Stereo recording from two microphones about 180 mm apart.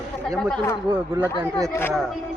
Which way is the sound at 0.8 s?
15° right (ahead or behind).